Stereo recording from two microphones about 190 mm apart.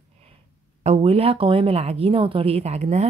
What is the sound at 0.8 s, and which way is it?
Speech, 30° right (ahead or behind).